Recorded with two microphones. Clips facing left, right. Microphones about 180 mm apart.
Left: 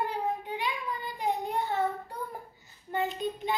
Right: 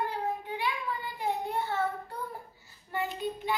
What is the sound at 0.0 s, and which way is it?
Child singing, 15° left (ahead or behind).